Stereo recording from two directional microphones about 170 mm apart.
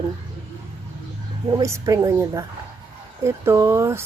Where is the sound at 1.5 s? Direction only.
20° right (ahead or behind).